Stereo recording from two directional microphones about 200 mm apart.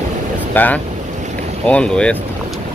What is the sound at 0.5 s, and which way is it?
Speech, 10° left (ahead or behind).